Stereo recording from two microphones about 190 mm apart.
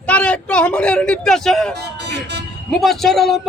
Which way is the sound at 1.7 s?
60° right (ahead or behind).